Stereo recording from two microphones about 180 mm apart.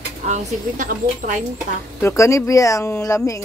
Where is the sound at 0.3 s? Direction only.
45° right (ahead or behind).